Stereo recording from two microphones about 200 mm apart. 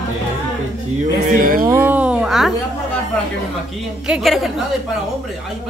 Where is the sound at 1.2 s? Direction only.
45° right (ahead or behind).